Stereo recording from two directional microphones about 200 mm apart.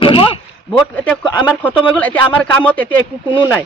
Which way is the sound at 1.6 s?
10° left (ahead or behind).